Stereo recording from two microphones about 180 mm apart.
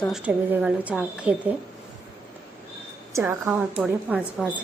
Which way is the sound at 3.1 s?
15° right (ahead or behind).